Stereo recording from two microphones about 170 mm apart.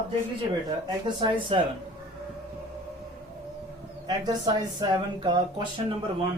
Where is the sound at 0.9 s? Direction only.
25° right (ahead or behind).